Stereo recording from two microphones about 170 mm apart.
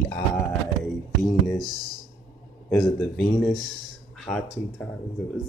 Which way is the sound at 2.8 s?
10° left (ahead or behind).